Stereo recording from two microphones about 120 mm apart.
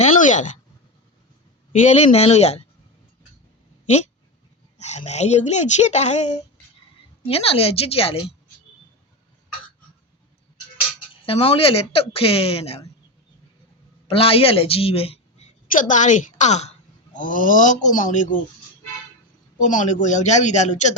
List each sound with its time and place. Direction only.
0.0 s a sound: 90° left
1.8 s speech: 75° left (ahead or behind)
4.8 s speech: 70° left (ahead or behind)
7.3 s speech: 50° left (ahead or behind)
11.1 s speech: 50° left (ahead or behind)
14.1 s a woman's voice: 50° left (ahead or behind)
15.8 s speech: 90° left; by 16.7 s 70° left (ahead or behind)
17.2 s speech: 90° left
19.5 s a man's voice: 90° left